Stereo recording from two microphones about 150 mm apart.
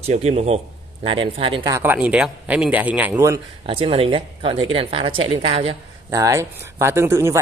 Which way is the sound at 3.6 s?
40° right (ahead or behind).